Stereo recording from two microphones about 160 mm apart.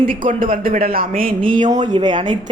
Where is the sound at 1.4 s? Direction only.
35° right (ahead or behind).